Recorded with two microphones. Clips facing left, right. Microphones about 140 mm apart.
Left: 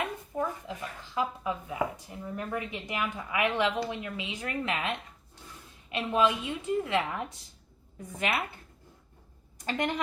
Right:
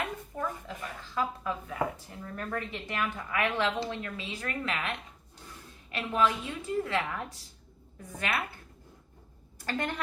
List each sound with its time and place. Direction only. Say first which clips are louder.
0.3 s a woman's voice: left 4 dB; 15° left (ahead or behind)
9.6 s a woman's voice: left 3 dB; 20° left (ahead or behind)